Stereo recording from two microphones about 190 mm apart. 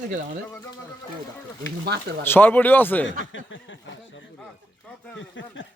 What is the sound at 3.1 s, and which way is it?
Snicker, 80° left.